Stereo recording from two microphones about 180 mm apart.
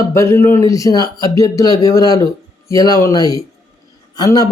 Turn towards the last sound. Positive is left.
turn(degrees=20)  # may be behind; listen again after turning